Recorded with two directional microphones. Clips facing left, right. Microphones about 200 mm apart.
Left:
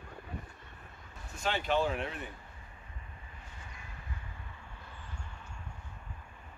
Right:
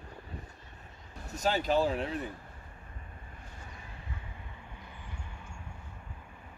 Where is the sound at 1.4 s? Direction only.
40° right (ahead or behind).